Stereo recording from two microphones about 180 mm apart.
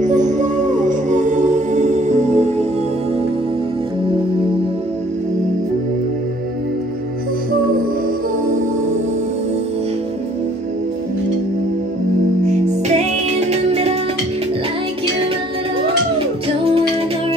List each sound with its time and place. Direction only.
0.0 s music: 45° right (ahead or behind)